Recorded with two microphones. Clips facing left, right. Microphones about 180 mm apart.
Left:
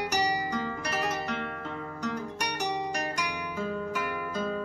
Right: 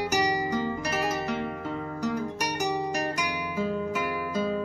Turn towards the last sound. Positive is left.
turn(degrees=-5)  # may be behind; listen again after turning